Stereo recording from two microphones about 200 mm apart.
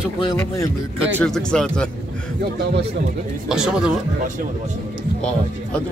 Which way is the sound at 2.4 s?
55° right (ahead or behind).